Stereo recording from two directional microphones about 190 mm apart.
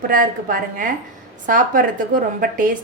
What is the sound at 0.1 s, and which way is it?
A woman's voice, 45° right (ahead or behind).